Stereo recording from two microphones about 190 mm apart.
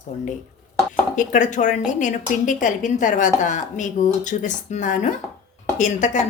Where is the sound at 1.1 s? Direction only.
45° left (ahead or behind).